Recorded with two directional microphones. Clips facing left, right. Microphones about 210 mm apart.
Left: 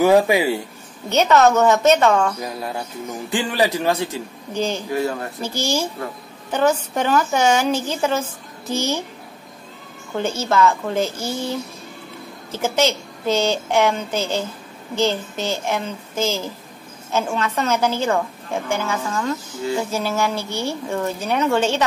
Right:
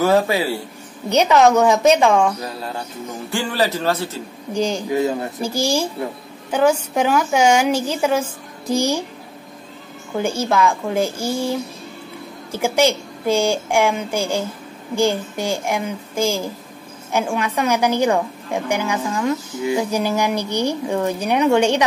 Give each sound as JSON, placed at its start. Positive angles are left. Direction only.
{"t": 0.0, "sound": "speech", "side_deg": 15}
{"t": 1.0, "sound": "a woman's voice", "side_deg": -15}
{"t": 3.3, "sound": "speech", "side_deg": 15}
{"t": 4.6, "sound": "a woman's voice", "side_deg": -10}
{"t": 10.1, "sound": "a woman's voice", "side_deg": -10}